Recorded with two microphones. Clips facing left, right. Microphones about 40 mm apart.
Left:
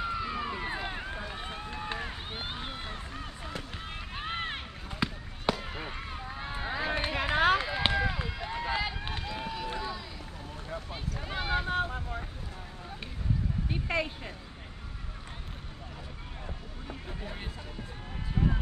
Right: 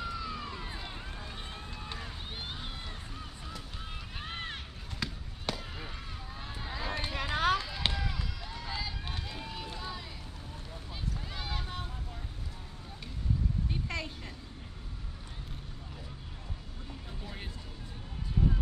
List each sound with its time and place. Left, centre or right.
0.0 s run: left
4.1 s run: left
5.0 s a sound: left
9.2 s run: left
10.9 s boat: left
13.7 s a sound: left
18.3 s music: left